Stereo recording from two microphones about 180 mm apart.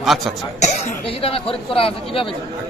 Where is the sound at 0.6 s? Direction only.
30° left (ahead or behind).